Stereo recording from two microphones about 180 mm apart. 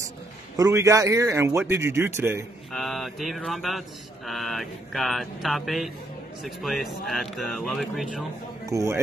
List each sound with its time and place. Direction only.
0.6 s a man's voice: 15° right (ahead or behind)
2.7 s speech: centre (ahead or behind)
8.6 s a man's voice: 15° right (ahead or behind)